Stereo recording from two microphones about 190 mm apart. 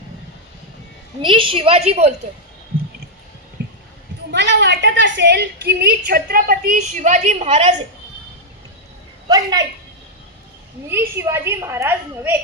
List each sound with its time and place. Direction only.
1.2 s a woman's voice: 25° right (ahead or behind)
4.3 s a woman's voice: 65° right (ahead or behind); by 7.8 s 35° right (ahead or behind)
9.3 s a woman's voice: 20° right (ahead or behind)
10.8 s a woman's voice: 10° right (ahead or behind)